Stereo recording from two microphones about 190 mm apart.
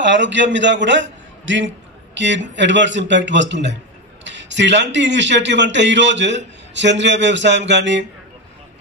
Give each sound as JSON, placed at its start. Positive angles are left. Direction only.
{"t": 0.0, "sound": "a man's voice", "side_deg": -70}